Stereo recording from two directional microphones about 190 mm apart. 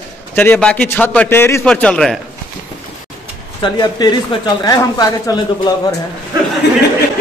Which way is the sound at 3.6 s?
20° left (ahead or behind).